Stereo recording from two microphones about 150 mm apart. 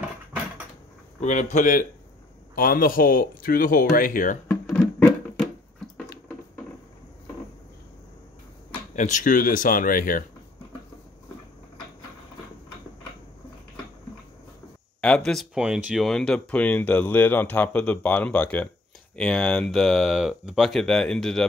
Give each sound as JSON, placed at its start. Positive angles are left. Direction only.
{"t": 1.2, "sound": "speech", "side_deg": 55}
{"t": 2.5, "sound": "speech", "side_deg": 75}
{"t": 4.6, "sound": "music", "side_deg": 5}
{"t": 8.9, "sound": "speech", "side_deg": 55}
{"t": 15.0, "sound": "speech", "side_deg": 5}